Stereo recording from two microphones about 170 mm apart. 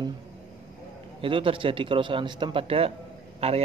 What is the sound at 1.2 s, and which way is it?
Speech, 30° right (ahead or behind).